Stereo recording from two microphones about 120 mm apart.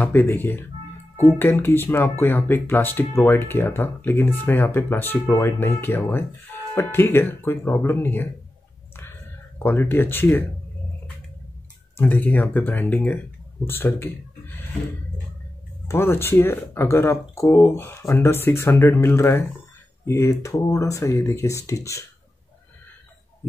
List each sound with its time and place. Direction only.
0.0 s speech: 15° left (ahead or behind)
9.6 s speech: 15° left (ahead or behind)
12.0 s speech: 15° left (ahead or behind)
15.9 s speech: 20° left (ahead or behind)